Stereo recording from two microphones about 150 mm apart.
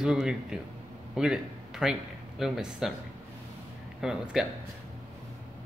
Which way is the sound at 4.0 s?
5° right (ahead or behind).